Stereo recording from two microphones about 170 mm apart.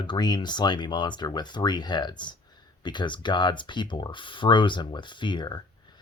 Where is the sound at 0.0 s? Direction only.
25° left (ahead or behind).